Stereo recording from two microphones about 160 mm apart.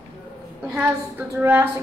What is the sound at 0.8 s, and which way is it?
Speech, 10° right (ahead or behind).